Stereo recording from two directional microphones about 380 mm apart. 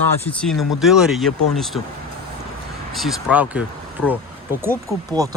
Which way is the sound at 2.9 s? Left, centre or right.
Centre.